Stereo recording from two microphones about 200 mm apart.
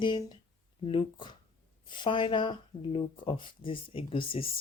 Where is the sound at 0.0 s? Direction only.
20° left (ahead or behind).